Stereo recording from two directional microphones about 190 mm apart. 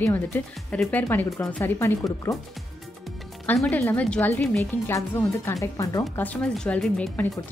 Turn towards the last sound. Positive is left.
turn(degrees=10)  # may be behind; listen again after turning